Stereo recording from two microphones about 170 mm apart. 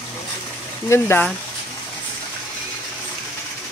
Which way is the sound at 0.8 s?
15° left (ahead or behind).